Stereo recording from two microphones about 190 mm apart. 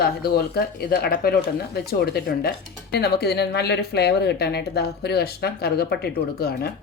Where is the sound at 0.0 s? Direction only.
55° left (ahead or behind).